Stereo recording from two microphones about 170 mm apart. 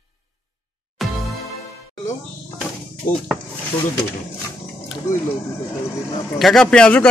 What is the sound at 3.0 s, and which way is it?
Speech, 50° left (ahead or behind).